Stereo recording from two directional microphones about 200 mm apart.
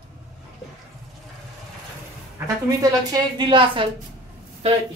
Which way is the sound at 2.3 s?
15° right (ahead or behind).